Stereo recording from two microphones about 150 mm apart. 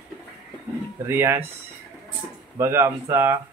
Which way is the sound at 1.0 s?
15° right (ahead or behind).